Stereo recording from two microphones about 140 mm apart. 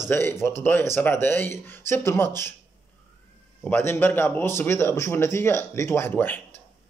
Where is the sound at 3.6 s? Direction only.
15° left (ahead or behind).